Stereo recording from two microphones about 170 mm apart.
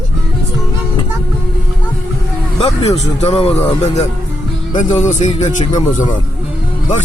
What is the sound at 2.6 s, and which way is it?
Speech, 35° left (ahead or behind).